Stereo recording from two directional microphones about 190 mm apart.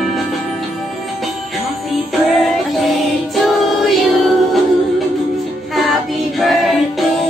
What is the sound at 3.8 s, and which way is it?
Music, centre (ahead or behind).